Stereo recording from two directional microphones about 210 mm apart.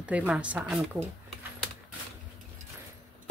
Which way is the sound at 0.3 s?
5° right (ahead or behind).